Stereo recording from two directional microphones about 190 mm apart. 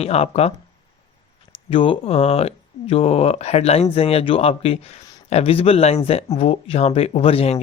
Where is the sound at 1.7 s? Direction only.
30° left (ahead or behind).